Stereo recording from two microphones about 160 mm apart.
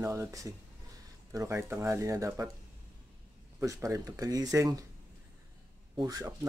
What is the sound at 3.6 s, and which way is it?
Speech, 20° right (ahead or behind).